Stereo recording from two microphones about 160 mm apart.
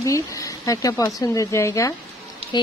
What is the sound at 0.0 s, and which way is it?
Speech, 20° left (ahead or behind).